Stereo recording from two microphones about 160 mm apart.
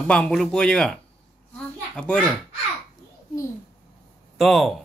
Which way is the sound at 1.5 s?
5° left (ahead or behind).